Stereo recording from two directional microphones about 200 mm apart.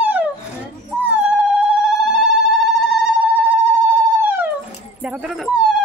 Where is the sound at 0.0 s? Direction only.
10° right (ahead or behind).